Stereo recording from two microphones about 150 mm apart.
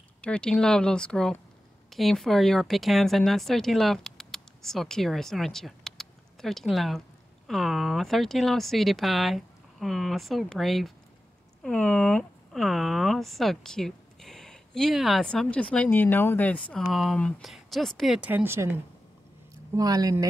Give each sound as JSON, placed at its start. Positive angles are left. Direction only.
{"t": 0.2, "sound": "speech", "side_deg": 5}